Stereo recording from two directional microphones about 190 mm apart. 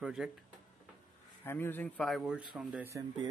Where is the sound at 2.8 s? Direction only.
15° right (ahead or behind).